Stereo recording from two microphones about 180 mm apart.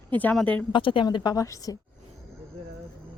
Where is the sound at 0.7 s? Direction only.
25° left (ahead or behind).